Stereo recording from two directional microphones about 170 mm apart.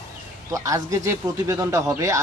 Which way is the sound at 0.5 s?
20° right (ahead or behind).